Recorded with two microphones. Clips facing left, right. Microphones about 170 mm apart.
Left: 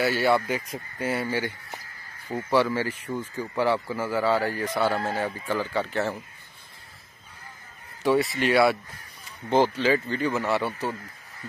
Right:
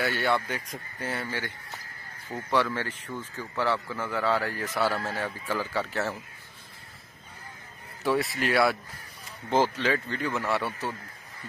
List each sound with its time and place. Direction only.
0.0 s speech: 5° left (ahead or behind)
4.8 s speech: 25° left (ahead or behind)
5.1 s speech: centre (ahead or behind)
8.0 s speech: centre (ahead or behind)